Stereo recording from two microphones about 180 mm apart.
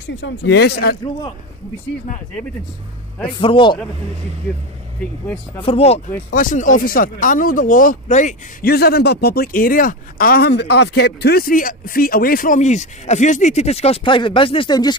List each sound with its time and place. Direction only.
0.1 s speech: 90° left; by 0.9 s 60° left (ahead or behind)
3.3 s a man's voice: 30° left (ahead or behind)
5.6 s speech: 35° left (ahead or behind)
6.3 s speech: 45° left (ahead or behind); by 15.0 s 25° left (ahead or behind)